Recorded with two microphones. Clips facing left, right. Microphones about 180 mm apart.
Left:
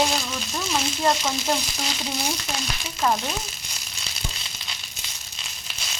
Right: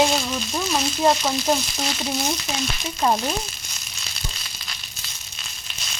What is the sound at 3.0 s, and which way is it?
Frying, 25° right (ahead or behind).